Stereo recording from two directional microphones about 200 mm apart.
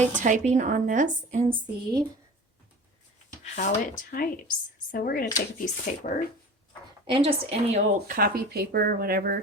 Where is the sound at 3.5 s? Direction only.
45° left (ahead or behind).